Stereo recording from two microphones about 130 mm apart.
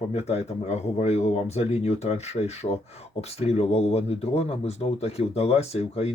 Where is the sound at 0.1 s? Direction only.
55° left (ahead or behind).